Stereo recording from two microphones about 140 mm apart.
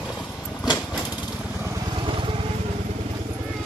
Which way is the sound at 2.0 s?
35° right (ahead or behind).